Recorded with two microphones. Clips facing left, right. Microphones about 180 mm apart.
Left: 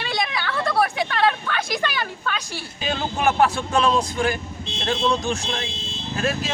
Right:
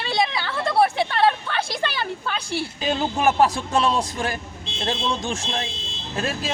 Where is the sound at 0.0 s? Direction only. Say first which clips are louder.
Right 2 dB; 25° right (ahead or behind).